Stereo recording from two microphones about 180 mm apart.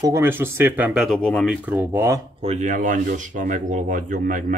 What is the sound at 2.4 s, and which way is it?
Speech, 40° right (ahead or behind).